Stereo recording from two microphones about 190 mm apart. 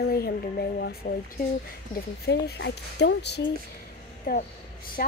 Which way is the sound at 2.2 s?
60° left (ahead or behind).